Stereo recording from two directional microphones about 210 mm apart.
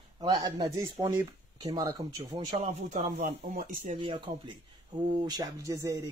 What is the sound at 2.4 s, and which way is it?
Speech, 30° right (ahead or behind).